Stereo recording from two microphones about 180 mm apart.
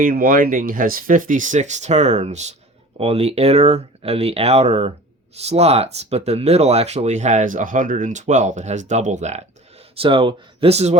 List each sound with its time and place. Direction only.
0.0 s speech: 50° right (ahead or behind)
10.0 s speech: 30° right (ahead or behind)